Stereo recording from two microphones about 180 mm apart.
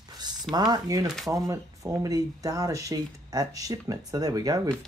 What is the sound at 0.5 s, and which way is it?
Speech, 20° right (ahead or behind).